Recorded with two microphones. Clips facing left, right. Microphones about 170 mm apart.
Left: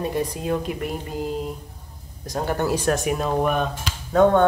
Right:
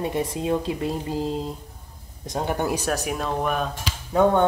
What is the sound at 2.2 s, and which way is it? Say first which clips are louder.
Finger snapping: left 1 dB; 20° right (ahead or behind).